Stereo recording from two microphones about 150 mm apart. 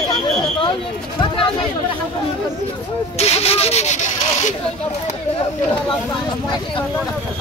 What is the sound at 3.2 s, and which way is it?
Speech, 45° left (ahead or behind).